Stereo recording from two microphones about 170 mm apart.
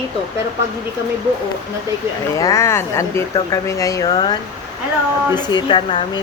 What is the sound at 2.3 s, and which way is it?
Speech, 20° left (ahead or behind).